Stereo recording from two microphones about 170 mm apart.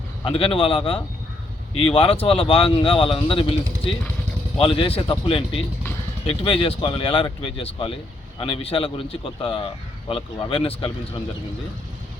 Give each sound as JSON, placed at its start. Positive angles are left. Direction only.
{"t": 0.3, "sound": "speech", "side_deg": 30}
{"t": 4.5, "sound": "speech", "side_deg": 30}